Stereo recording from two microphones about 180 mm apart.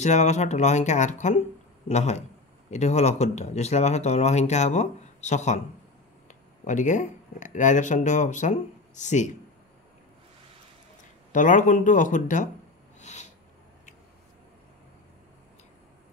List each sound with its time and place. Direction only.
0.0 s speech: 40° left (ahead or behind)
11.3 s speech: 45° left (ahead or behind)
13.0 s a sound: 40° left (ahead or behind)